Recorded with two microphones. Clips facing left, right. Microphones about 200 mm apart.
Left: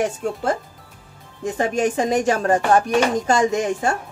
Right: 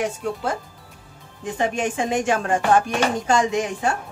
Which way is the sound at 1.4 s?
40° left (ahead or behind).